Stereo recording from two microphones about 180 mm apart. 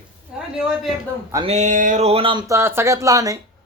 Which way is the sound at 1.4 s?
40° right (ahead or behind).